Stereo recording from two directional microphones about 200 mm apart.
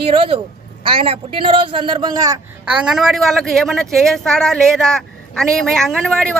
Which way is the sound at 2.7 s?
5° right (ahead or behind).